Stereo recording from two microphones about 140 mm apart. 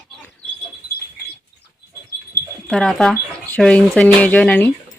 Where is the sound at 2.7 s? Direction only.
5° left (ahead or behind).